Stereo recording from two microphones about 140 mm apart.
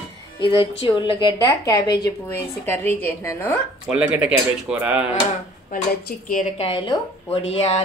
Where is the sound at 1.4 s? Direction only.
25° left (ahead or behind).